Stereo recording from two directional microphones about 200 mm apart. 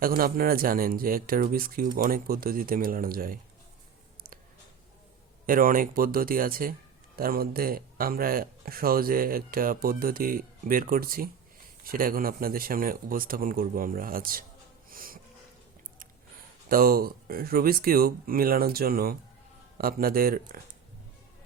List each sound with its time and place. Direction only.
0.0 s speech: 45° right (ahead or behind)
5.5 s speech: 45° right (ahead or behind)
14.8 s wheeze: 45° right (ahead or behind)
16.6 s speech: 45° right (ahead or behind)